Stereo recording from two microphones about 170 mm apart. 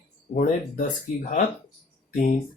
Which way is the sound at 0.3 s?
50° left (ahead or behind).